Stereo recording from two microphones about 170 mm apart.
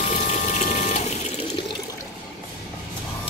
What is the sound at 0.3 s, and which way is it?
Pump, 45° left (ahead or behind).